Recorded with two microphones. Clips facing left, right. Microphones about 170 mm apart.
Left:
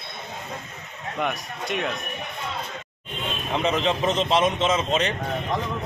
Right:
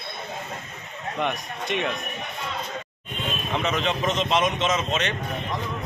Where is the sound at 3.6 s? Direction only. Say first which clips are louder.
Left 3 dB; 35° left (ahead or behind).